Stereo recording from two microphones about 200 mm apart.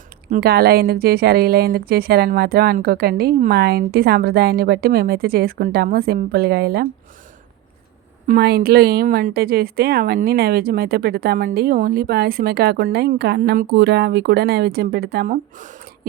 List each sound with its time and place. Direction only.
0.3 s a woman's voice: 50° right (ahead or behind)
8.3 s a woman's voice: 50° right (ahead or behind)